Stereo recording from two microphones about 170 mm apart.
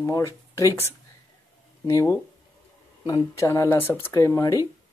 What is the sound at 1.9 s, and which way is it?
Speech, 20° left (ahead or behind).